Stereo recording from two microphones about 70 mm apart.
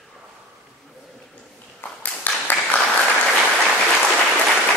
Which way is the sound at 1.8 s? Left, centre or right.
Left.